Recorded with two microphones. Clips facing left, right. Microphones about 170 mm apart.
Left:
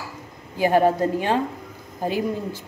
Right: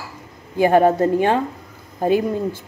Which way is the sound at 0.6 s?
55° right (ahead or behind).